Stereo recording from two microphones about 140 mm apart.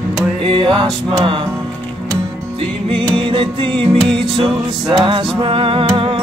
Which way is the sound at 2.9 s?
35° right (ahead or behind).